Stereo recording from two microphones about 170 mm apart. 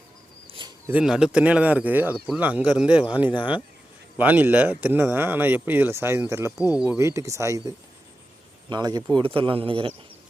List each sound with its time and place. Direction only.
0.9 s speech: 5° right (ahead or behind)
3.3 s speech: 30° left (ahead or behind)
4.2 s speech: 10° right (ahead or behind)
8.7 s speech: 25° right (ahead or behind)